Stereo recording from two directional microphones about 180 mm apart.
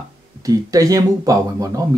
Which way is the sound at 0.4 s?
20° right (ahead or behind).